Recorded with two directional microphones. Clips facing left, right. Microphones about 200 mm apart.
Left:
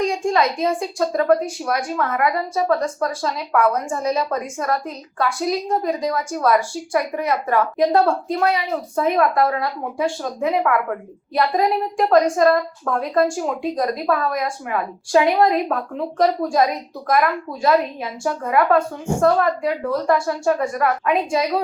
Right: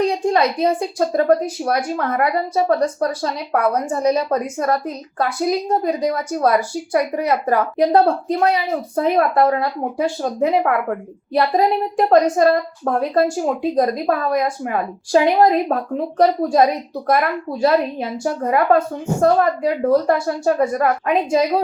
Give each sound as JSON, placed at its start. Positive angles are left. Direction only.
{"t": 0.0, "sound": "a woman's voice", "side_deg": -35}